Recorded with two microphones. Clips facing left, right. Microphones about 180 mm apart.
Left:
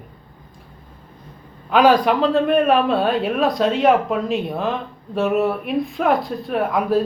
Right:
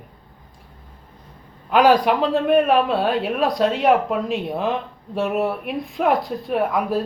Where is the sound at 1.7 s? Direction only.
10° right (ahead or behind).